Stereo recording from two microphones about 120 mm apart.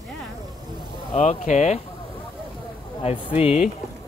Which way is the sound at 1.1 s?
70° left (ahead or behind).